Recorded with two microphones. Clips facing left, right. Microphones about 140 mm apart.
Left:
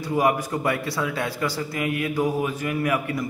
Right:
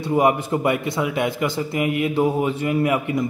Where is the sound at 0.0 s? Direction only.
25° right (ahead or behind).